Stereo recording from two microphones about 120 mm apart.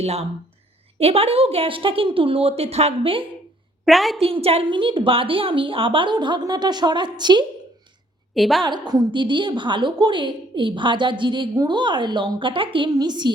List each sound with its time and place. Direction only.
0.0 s a woman's voice: 60° right (ahead or behind)
3.8 s a woman's voice: centre (ahead or behind)
4.2 s a woman's voice: 55° right (ahead or behind); by 7.4 s 40° right (ahead or behind)
8.4 s a woman's voice: centre (ahead or behind)
8.6 s a woman's voice: 35° right (ahead or behind)